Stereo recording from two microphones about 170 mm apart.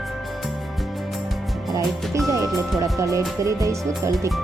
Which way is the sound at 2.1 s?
20° right (ahead or behind).